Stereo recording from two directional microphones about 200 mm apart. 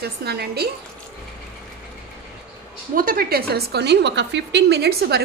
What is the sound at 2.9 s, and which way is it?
A woman's voice, 45° right (ahead or behind).